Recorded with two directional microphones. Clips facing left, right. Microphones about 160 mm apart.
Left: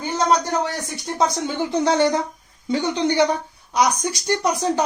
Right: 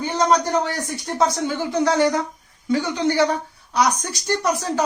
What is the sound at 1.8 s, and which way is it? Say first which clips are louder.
Speech: even; 25° left (ahead or behind).